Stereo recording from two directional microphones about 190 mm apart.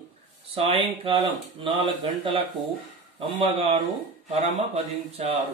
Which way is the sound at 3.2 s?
30° right (ahead or behind).